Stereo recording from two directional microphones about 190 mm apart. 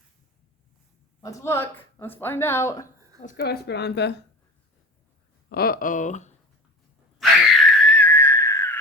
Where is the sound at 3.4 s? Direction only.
60° left (ahead or behind).